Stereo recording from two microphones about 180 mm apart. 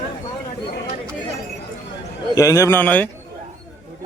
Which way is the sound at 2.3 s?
20° left (ahead or behind).